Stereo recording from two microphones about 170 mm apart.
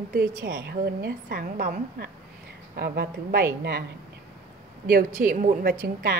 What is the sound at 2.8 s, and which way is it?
A woman's voice, 70° right (ahead or behind).